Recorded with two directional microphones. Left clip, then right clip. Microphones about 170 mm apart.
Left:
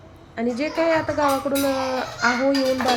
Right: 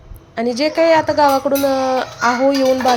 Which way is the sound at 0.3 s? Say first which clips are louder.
Right 7 dB; 25° right (ahead or behind).